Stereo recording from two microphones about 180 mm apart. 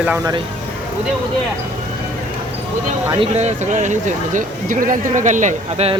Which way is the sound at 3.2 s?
40° right (ahead or behind).